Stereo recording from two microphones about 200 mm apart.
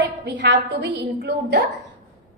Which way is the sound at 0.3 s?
60° right (ahead or behind).